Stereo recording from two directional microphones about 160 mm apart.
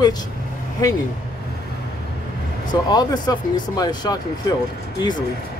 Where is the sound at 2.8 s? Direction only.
25° left (ahead or behind).